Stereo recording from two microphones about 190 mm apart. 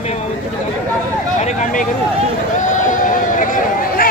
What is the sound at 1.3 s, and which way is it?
Speech, 40° left (ahead or behind).